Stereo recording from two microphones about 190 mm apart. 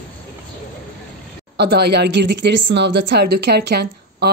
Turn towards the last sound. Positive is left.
turn(degrees=-60)  # may be behind; listen again after turning